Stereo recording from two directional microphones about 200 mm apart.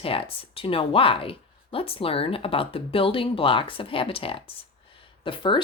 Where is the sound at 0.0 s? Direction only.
25° left (ahead or behind).